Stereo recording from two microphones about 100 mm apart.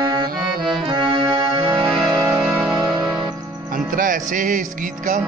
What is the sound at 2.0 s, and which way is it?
Music, 55° right (ahead or behind).